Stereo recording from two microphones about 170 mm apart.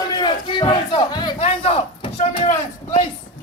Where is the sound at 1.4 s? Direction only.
35° left (ahead or behind).